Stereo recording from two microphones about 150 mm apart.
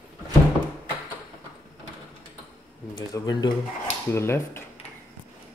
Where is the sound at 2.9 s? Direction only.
25° left (ahead or behind).